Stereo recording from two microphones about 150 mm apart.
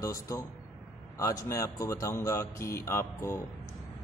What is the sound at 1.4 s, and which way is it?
Speech, 20° left (ahead or behind).